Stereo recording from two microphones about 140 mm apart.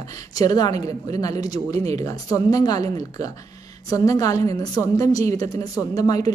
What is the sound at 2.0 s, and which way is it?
Speech, 25° left (ahead or behind).